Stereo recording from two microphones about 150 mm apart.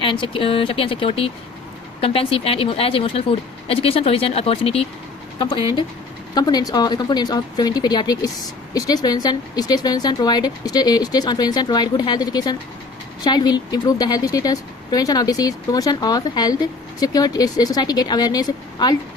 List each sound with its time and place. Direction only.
0.0 s speech: 35° left (ahead or behind)